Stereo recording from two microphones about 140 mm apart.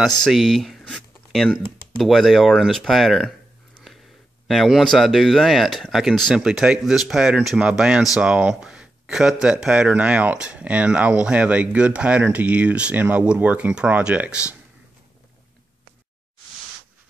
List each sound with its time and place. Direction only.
0.2 s speech: centre (ahead or behind)